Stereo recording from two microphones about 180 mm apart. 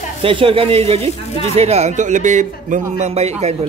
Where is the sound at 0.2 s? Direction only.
30° right (ahead or behind).